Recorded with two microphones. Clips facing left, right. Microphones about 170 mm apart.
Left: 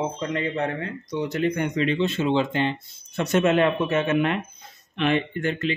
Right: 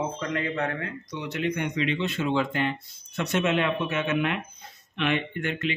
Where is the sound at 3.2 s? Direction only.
45° left (ahead or behind).